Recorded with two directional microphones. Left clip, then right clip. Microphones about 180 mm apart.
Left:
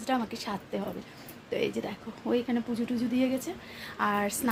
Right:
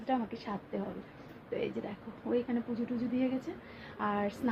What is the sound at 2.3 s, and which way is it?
Speech, 50° left (ahead or behind).